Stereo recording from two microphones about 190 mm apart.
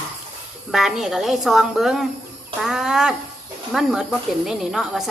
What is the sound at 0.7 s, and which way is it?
Speech, centre (ahead or behind).